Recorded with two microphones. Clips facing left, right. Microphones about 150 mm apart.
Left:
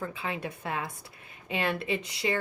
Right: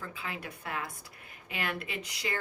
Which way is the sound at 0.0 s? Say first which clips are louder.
Left 6 dB; 25° left (ahead or behind).